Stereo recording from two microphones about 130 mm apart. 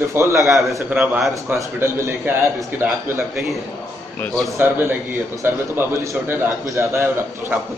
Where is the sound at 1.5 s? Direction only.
20° right (ahead or behind).